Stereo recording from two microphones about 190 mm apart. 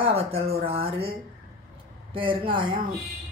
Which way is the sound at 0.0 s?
30° right (ahead or behind).